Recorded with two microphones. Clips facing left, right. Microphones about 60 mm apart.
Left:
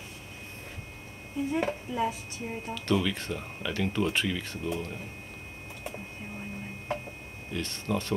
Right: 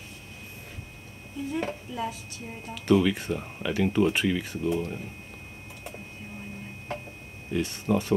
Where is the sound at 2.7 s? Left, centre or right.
Centre.